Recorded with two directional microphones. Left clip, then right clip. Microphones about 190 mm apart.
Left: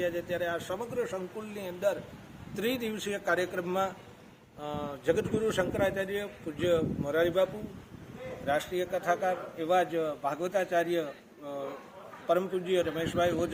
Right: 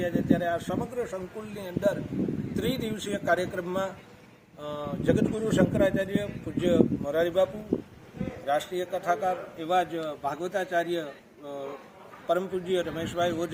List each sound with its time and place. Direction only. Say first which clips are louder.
0.0 s a man's voice: right 4 dB; centre (ahead or behind)
8.4 s a man's voice: right 2 dB; centre (ahead or behind)